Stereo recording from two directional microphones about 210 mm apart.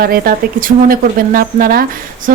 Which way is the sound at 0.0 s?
45° right (ahead or behind).